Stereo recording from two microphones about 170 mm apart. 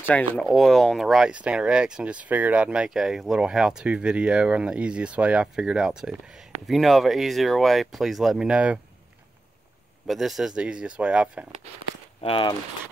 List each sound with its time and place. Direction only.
0.0 s speech: 10° left (ahead or behind); by 8.7 s 5° right (ahead or behind)
10.0 s speech: centre (ahead or behind)
12.2 s speech: 30° left (ahead or behind)